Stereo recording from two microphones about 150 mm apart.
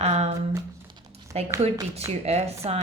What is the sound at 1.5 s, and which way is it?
Speech, 20° right (ahead or behind).